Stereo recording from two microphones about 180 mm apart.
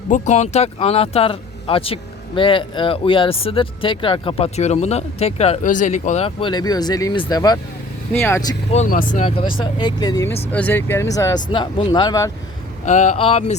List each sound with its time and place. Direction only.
0.1 s speech: 40° left (ahead or behind); by 8.5 s 15° left (ahead or behind)
8.7 s speech: 45° left (ahead or behind)
9.2 s speech: 30° left (ahead or behind)
10.5 s speech: 10° left (ahead or behind)
12.8 s speech: 40° left (ahead or behind)